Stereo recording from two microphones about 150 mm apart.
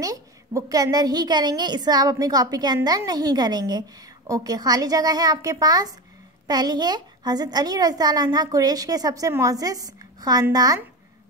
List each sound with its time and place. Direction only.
0.0 s a woman's voice: 25° right (ahead or behind)